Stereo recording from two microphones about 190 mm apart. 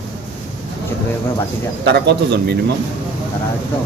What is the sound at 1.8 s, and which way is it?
Speech, 60° right (ahead or behind).